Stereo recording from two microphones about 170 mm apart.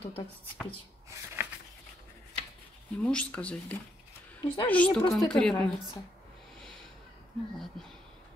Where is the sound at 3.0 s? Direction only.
5° left (ahead or behind).